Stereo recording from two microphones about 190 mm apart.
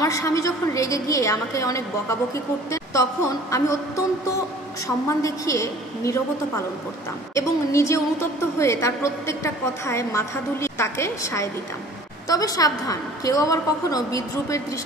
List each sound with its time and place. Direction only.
0.0 s a woman's voice: 15° left (ahead or behind)
7.3 s a woman's voice: 15° left (ahead or behind)